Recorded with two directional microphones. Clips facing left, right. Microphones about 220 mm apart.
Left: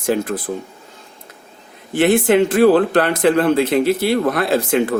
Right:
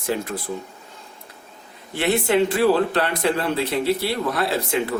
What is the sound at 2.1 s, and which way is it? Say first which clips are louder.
Speech: left 5 dB; 90° left.